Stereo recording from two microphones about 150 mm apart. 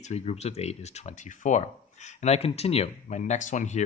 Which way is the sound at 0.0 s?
45° left (ahead or behind).